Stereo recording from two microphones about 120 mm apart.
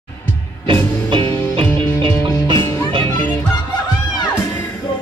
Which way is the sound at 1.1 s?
45° right (ahead or behind).